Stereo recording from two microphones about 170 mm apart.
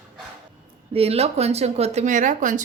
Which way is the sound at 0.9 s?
35° right (ahead or behind).